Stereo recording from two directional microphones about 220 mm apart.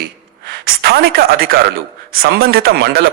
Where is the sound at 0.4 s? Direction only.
45° right (ahead or behind).